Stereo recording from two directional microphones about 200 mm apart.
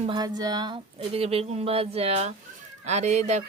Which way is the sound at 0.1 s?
20° right (ahead or behind).